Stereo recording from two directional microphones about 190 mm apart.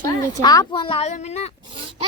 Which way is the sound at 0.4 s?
20° left (ahead or behind).